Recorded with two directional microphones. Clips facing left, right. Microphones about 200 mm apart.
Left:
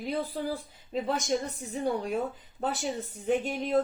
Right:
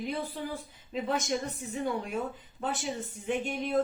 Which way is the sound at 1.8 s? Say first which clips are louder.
Left 4 dB; 40° left (ahead or behind).